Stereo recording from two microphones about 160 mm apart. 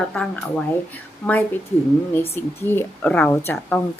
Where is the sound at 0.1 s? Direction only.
5° left (ahead or behind).